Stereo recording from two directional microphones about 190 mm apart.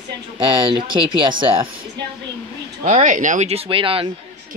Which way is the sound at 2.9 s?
40° right (ahead or behind).